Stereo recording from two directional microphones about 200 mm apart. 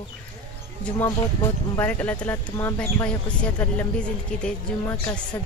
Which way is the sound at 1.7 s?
10° left (ahead or behind).